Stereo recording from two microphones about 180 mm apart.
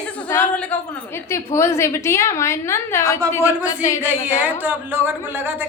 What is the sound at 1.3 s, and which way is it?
A woman's voice, 15° left (ahead or behind).